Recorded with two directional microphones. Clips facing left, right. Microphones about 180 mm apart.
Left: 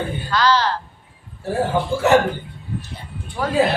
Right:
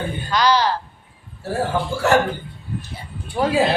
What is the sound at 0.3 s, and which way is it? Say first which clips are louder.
Speech: right 1 dB; 15° right (ahead or behind).